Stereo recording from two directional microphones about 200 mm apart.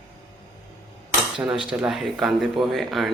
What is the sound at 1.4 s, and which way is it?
Speech, 5° right (ahead or behind).